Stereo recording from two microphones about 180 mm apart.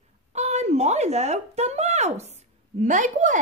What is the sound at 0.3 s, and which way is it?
A woman's voice, 40° right (ahead or behind).